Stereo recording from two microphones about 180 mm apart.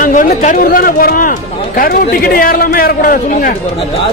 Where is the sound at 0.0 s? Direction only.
45° left (ahead or behind).